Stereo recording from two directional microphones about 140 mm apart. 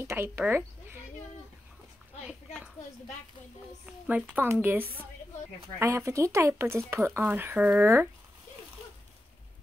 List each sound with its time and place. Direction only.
0.0 s speech: 20° right (ahead or behind)
2.2 s a sound: 5° right (ahead or behind)
3.8 s a woman's voice: 10° right (ahead or behind)